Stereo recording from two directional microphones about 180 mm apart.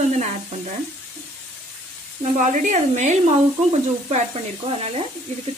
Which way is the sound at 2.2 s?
40° right (ahead or behind).